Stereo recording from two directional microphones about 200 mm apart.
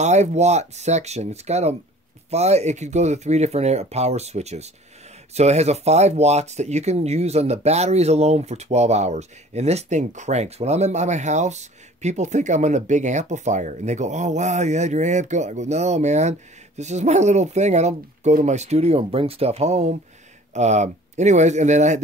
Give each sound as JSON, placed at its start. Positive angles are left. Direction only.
{"t": 0.0, "sound": "speech", "side_deg": -35}